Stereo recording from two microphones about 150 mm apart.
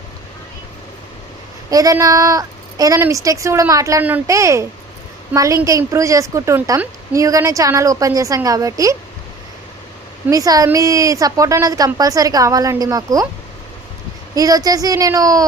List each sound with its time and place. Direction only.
1.7 s a woman's voice: 25° right (ahead or behind)
10.2 s a woman's voice: 25° right (ahead or behind)
14.3 s a woman's voice: 25° right (ahead or behind)